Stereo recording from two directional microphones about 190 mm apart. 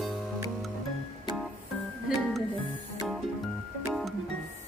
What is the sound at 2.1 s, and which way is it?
Music, 5° right (ahead or behind).